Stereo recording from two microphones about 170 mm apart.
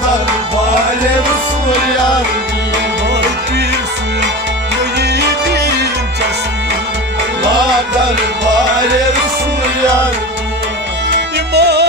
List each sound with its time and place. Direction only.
4.9 s music: 80° right
11.1 s music: 80° right